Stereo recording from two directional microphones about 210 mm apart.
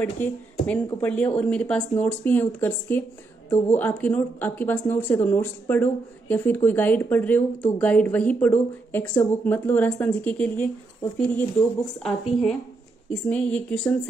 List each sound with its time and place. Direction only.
0.0 s speech: 5° left (ahead or behind)